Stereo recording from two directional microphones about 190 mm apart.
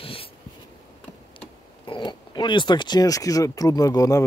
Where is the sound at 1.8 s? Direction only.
25° left (ahead or behind).